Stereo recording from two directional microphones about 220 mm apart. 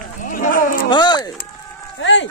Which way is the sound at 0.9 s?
20° left (ahead or behind).